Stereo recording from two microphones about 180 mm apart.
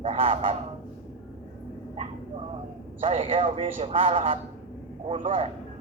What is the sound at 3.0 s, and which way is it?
A man's voice, 35° right (ahead or behind).